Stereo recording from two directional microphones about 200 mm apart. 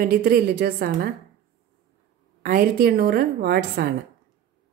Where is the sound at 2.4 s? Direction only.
50° right (ahead or behind).